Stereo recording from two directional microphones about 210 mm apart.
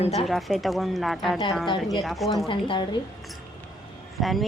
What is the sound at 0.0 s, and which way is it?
Speech, 30° left (ahead or behind).